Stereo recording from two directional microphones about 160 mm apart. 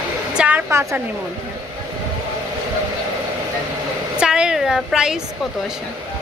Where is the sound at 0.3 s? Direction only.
10° right (ahead or behind).